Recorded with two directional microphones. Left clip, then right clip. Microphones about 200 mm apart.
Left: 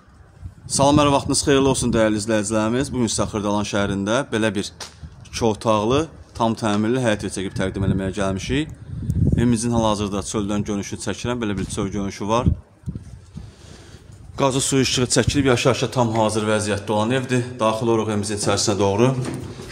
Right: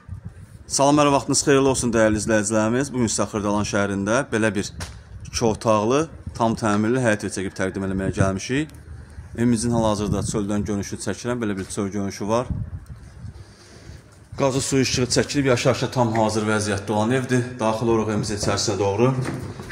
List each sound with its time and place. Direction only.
0.7 s a man's voice: 5° left (ahead or behind)
14.3 s a man's voice: 15° left (ahead or behind)
18.8 s speech: 35° left (ahead or behind)